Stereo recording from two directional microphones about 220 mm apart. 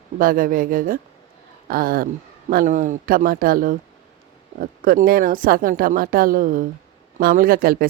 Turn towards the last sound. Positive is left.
turn(degrees=-40)  # may be behind; listen again after turning